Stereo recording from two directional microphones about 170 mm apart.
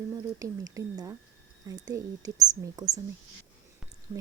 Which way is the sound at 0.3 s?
20° right (ahead or behind).